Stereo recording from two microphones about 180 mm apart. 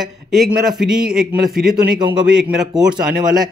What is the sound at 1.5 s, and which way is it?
Speech, 55° right (ahead or behind).